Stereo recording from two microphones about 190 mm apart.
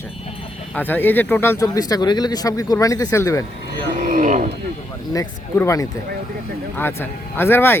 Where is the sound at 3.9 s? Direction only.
40° right (ahead or behind).